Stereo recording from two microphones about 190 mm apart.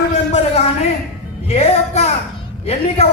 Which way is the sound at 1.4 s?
35° left (ahead or behind).